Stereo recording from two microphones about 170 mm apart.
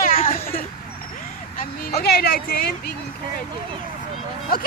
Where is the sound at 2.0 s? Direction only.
65° left (ahead or behind).